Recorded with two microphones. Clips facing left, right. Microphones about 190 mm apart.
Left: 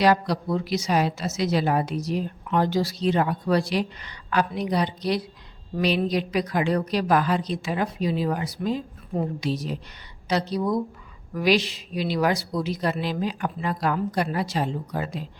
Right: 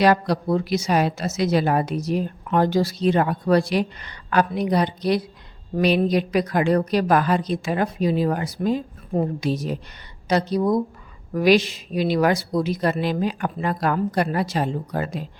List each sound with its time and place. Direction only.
0.0 s a woman's voice: 55° right (ahead or behind)